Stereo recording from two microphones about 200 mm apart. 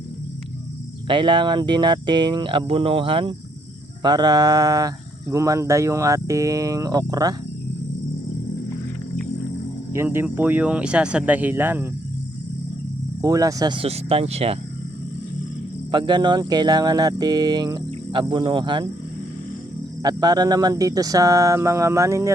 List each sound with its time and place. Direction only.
1.0 s speech: 25° right (ahead or behind)
9.9 s speech: 10° right (ahead or behind)
13.2 s speech: 15° right (ahead or behind)
15.9 s speech: 20° right (ahead or behind)
20.0 s speech: 20° right (ahead or behind)